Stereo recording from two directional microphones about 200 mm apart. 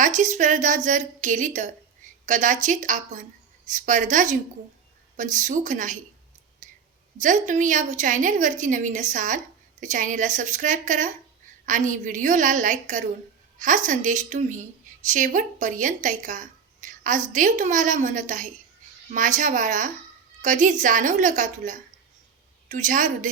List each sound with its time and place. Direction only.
0.0 s speech: 40° right (ahead or behind)
6.6 s clicking: 40° right (ahead or behind)
7.2 s speech: 40° right (ahead or behind)